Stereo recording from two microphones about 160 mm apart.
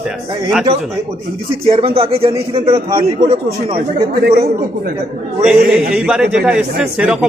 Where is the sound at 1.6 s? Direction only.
35° right (ahead or behind).